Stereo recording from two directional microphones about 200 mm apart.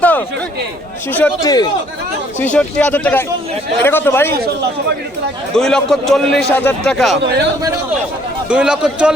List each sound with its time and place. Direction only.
0.0 s a sound: 10° left (ahead or behind)
1.1 s speech: 15° left (ahead or behind)
2.4 s speech: 5° left (ahead or behind)
5.5 s a man's voice: 5° left (ahead or behind)
8.4 s a man's voice: 5° right (ahead or behind)